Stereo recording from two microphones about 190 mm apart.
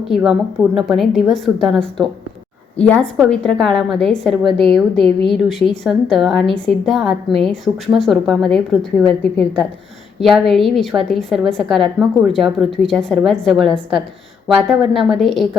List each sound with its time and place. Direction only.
0.0 s a woman's voice: centre (ahead or behind)